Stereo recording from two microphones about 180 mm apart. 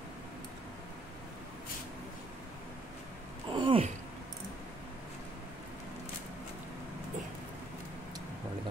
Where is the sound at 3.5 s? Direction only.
30° right (ahead or behind).